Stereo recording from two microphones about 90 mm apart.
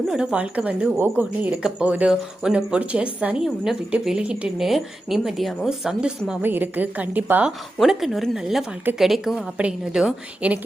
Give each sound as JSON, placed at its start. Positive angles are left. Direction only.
{"t": 0.1, "sound": "speech", "side_deg": -10}
{"t": 6.4, "sound": "a woman's voice", "side_deg": -20}
{"t": 7.8, "sound": "speech", "side_deg": 0}